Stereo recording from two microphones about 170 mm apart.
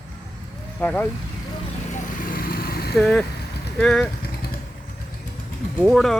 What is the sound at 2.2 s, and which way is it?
Vehicle, 60° left (ahead or behind).